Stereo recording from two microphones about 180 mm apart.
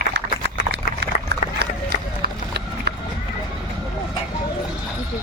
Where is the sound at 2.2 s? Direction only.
60° right (ahead or behind).